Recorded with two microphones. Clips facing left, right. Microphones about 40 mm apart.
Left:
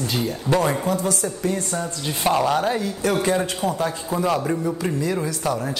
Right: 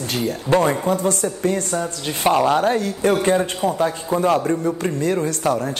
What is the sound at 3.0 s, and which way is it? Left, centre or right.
A woman's voice, right.